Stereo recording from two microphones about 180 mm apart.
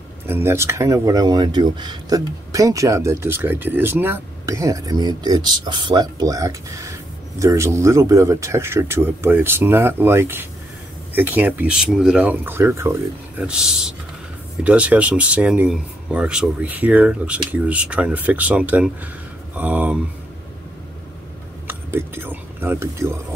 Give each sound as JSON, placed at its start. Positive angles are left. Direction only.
{"t": 0.3, "sound": "speech", "side_deg": -15}
{"t": 21.6, "sound": "speech", "side_deg": -10}